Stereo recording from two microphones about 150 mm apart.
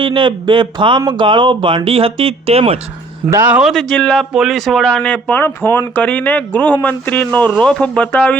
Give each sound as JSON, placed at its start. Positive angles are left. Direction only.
{"t": 0.0, "sound": "speech", "side_deg": -30}
{"t": 3.2, "sound": "speech", "side_deg": -20}
{"t": 3.5, "sound": "speech", "side_deg": 0}